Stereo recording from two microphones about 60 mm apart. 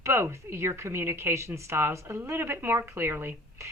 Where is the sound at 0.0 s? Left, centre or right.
Right.